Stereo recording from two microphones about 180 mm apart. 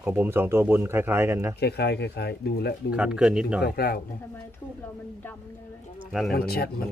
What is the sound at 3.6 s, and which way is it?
Speech, 60° left (ahead or behind).